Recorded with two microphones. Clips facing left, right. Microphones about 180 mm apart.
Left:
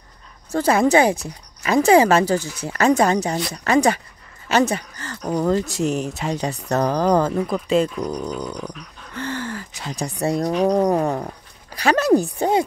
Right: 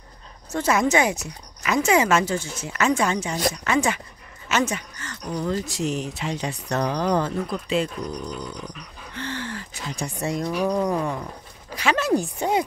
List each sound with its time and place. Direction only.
0.5 s speech: 35° left (ahead or behind)